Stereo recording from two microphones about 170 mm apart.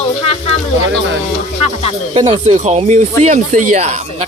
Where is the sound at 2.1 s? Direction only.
35° right (ahead or behind).